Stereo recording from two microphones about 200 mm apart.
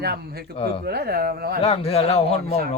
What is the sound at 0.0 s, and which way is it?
Speech, 50° right (ahead or behind).